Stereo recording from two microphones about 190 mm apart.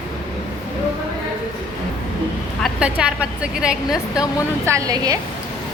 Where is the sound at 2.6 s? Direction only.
5° right (ahead or behind).